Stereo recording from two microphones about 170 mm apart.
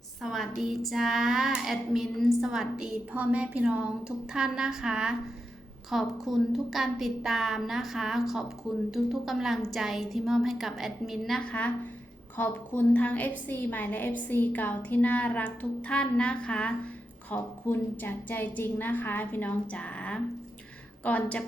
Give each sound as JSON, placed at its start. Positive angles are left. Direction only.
{"t": 0.2, "sound": "child singing", "side_deg": 0}
{"t": 12.4, "sound": "a woman's voice", "side_deg": 10}